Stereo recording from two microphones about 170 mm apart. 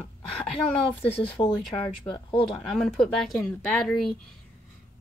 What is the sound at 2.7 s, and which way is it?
Speech, centre (ahead or behind).